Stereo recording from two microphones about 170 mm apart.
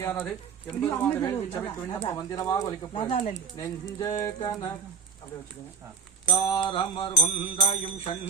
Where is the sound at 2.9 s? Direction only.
30° left (ahead or behind).